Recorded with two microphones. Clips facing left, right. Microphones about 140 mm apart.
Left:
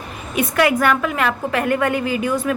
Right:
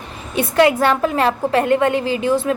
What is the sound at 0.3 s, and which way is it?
A woman's voice, 30° right (ahead or behind).